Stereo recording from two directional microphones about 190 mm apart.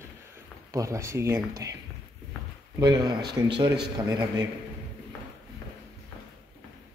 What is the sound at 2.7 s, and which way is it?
Speech, 20° right (ahead or behind).